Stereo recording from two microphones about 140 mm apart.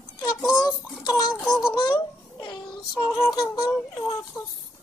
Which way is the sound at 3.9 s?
15° left (ahead or behind).